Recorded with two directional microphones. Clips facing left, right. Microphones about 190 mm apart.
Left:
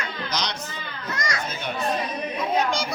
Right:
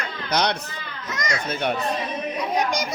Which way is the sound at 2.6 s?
15° right (ahead or behind).